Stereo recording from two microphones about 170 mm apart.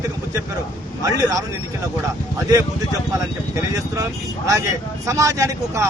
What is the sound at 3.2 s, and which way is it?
Speech, 20° right (ahead or behind).